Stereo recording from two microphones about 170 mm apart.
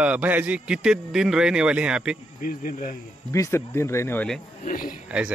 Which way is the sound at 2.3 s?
50° left (ahead or behind).